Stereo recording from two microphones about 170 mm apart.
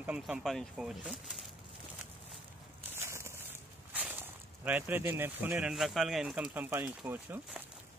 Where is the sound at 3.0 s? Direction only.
15° right (ahead or behind).